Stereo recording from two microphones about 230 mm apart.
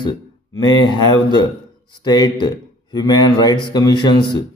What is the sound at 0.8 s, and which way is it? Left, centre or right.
Speech, centre.